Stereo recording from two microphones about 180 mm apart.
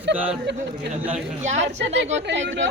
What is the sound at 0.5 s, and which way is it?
Speech, 70° right (ahead or behind).